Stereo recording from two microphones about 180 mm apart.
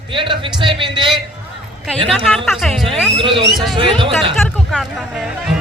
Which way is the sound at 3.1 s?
30° right (ahead or behind).